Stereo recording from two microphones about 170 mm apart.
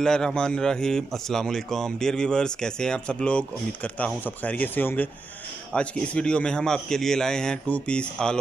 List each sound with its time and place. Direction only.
0.0 s a man's voice: 5° left (ahead or behind)